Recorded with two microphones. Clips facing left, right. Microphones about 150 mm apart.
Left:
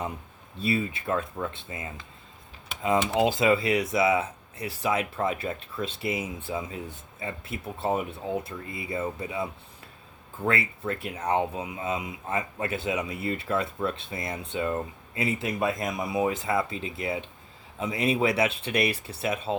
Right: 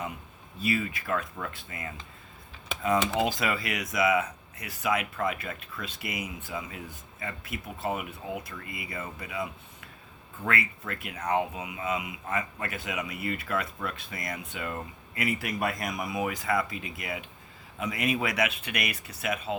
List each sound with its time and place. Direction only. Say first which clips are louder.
0.6 s speech: left 2 dB; 30° left (ahead or behind)
3.1 s speech: left 6 dB; 20° left (ahead or behind)